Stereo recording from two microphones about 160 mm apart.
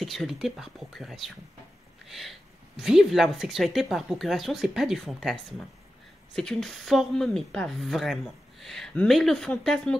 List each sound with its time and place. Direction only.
0.0 s a woman's voice: centre (ahead or behind)
2.0 s a sound: centre (ahead or behind)
2.8 s a woman's voice: centre (ahead or behind)